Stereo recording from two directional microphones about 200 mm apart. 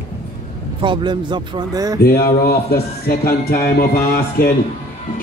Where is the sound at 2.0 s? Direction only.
50° left (ahead or behind).